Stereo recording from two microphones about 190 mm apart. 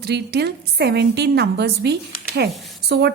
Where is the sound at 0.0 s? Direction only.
60° right (ahead or behind).